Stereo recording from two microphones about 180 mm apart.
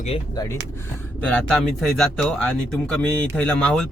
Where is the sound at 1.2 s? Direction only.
5° left (ahead or behind).